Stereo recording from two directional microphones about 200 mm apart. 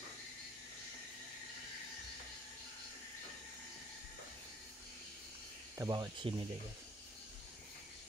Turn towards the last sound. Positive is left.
turn(degrees=-20)  # may be behind; listen again after turning